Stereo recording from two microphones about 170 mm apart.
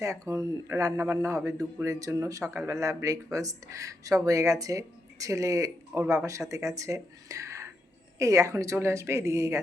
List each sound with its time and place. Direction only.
0.0 s speech: 20° right (ahead or behind)